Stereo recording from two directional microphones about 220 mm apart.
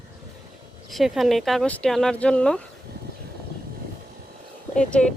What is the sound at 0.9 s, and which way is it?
Speech, centre (ahead or behind).